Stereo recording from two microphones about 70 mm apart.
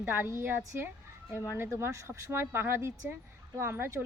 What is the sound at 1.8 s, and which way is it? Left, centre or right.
A woman's voice, right.